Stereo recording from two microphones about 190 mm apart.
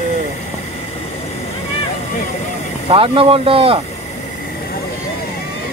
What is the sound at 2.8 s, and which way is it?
Speech, 30° right (ahead or behind).